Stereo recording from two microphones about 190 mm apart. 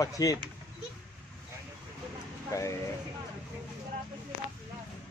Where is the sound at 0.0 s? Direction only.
15° left (ahead or behind).